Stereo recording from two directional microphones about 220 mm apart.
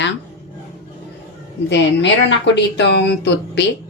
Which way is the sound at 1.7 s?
55° left (ahead or behind).